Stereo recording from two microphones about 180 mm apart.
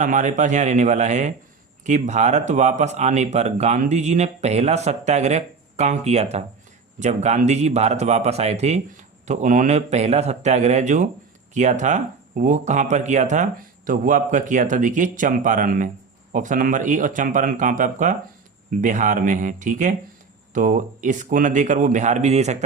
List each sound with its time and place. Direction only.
0.0 s speech: 45° right (ahead or behind)